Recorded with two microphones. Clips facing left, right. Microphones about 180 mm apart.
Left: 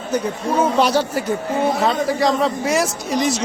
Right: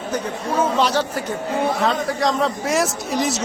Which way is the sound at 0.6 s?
10° left (ahead or behind).